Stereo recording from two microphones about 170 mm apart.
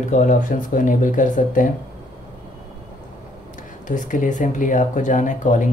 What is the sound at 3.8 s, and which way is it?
Speech, 50° left (ahead or behind).